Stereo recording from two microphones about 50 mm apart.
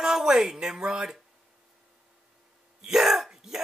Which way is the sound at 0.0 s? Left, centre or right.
Centre.